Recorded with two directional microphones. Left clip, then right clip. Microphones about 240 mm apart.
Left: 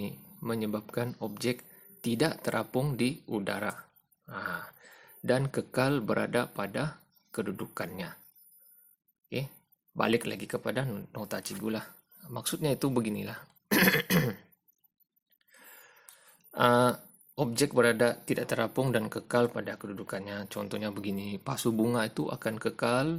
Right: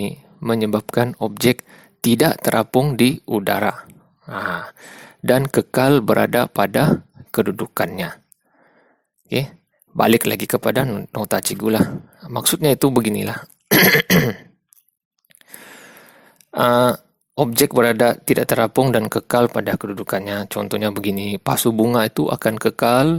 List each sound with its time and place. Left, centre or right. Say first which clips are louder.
0.0 s speech: right 13 dB; right
10.0 s speech: right 13 dB; right
15.4 s a sound: right 14 dB; right
16.5 s speech: right 9 dB; right